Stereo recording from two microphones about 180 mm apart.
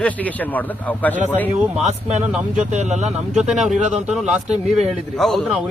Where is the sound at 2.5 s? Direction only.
45° right (ahead or behind).